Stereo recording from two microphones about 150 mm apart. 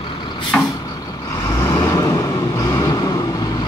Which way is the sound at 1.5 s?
20° left (ahead or behind).